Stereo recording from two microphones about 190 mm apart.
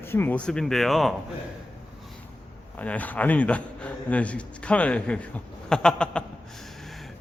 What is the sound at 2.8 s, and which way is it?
A man's voice, 10° left (ahead or behind).